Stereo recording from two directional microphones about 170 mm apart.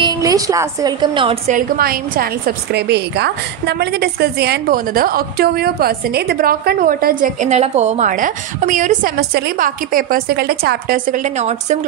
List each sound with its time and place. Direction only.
0.0 s a woman's voice: 20° right (ahead or behind)
1.5 s a woman's voice: 60° right (ahead or behind)
11.2 s a woman's voice: 45° right (ahead or behind)